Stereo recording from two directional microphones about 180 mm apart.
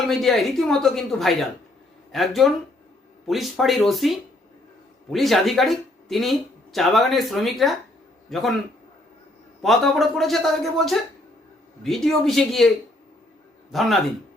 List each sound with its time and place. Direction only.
0.1 s speech: centre (ahead or behind)
9.6 s speech: centre (ahead or behind)
13.7 s speech: centre (ahead or behind)